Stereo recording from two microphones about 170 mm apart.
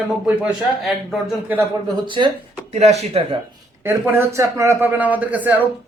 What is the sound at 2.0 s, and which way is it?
Speech, 30° right (ahead or behind).